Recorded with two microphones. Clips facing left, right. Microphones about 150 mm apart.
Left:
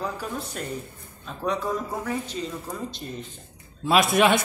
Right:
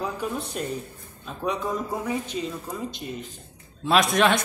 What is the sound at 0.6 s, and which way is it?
Speech, 20° right (ahead or behind).